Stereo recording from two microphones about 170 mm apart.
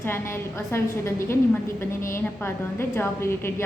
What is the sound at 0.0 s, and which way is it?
A woman's voice, 15° left (ahead or behind).